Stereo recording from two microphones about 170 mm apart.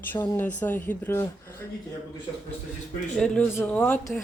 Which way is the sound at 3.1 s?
5° left (ahead or behind).